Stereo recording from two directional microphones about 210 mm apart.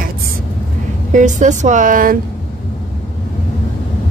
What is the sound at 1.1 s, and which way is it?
Speech, 35° right (ahead or behind).